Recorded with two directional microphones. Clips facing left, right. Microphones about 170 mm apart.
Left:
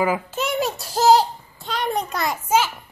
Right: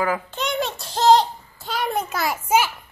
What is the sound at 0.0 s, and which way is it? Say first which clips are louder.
Babbling: left 2 dB; 10° left (ahead or behind).